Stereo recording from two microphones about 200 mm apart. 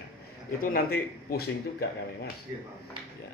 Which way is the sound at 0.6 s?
45° left (ahead or behind).